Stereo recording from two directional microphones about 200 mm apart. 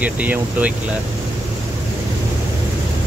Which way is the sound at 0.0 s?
5° right (ahead or behind).